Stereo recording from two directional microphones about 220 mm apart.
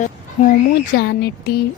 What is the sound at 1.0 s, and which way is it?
Speech, 45° left (ahead or behind).